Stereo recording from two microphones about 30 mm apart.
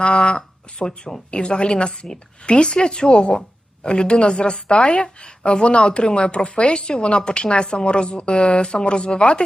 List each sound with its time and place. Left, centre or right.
0.0 s a woman's voice: left